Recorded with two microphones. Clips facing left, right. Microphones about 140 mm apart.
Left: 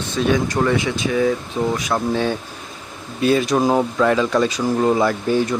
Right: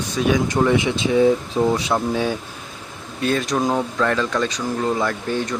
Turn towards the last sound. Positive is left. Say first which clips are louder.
# left 5 dB
turn(degrees=5)  # may be behind; listen again after turning